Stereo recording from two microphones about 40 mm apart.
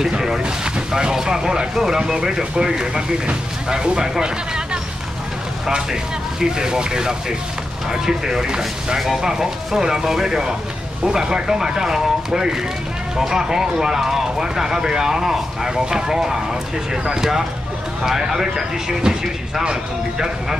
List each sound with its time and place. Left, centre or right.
0.0 s boat: centre
0.4 s boat: right
1.1 s speech: centre
6.4 s speech: centre